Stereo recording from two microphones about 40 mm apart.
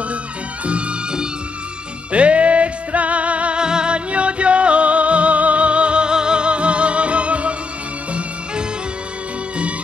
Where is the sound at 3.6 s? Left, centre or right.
Right.